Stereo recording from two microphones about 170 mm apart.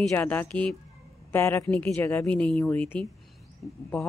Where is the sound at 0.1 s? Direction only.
10° left (ahead or behind).